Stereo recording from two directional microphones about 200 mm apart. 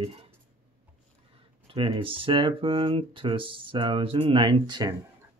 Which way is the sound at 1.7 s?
25° right (ahead or behind).